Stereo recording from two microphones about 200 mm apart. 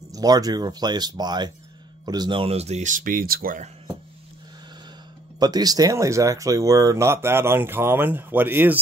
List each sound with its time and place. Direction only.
0.1 s speech: 20° right (ahead or behind); by 3.7 s 40° right (ahead or behind)
5.4 s speech: 20° right (ahead or behind)